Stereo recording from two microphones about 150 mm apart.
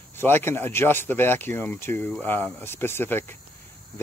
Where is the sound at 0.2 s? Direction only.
15° left (ahead or behind).